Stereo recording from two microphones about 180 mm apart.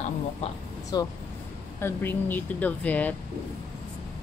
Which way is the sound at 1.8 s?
10° left (ahead or behind).